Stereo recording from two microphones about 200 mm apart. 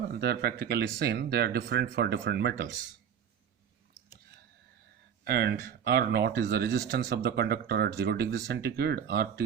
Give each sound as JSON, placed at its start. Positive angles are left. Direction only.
{"t": 0.1, "sound": "speech", "side_deg": -55}
{"t": 5.2, "sound": "speech", "side_deg": -50}